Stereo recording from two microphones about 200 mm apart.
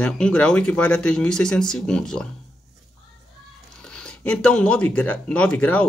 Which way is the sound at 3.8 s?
5° left (ahead or behind).